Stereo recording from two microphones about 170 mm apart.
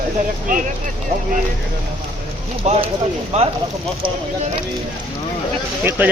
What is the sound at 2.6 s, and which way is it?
Speech, 40° right (ahead or behind).